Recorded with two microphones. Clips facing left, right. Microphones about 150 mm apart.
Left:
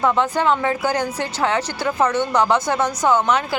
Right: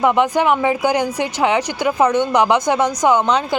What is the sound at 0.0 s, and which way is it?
A woman's voice, 15° right (ahead or behind).